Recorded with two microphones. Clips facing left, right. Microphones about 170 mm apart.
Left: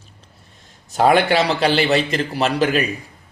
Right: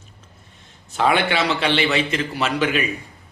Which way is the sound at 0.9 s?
40° left (ahead or behind).